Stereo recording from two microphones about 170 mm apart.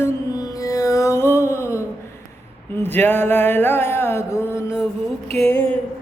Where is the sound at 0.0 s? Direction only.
20° left (ahead or behind).